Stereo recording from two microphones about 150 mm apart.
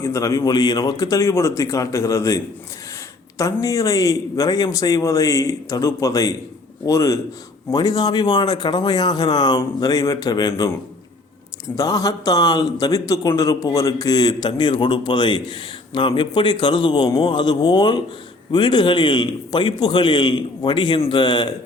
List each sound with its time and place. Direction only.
0.0 s a man's voice: 20° left (ahead or behind)
11.8 s a man's voice: 25° left (ahead or behind)